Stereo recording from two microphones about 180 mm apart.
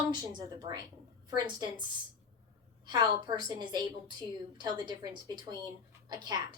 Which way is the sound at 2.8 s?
25° right (ahead or behind).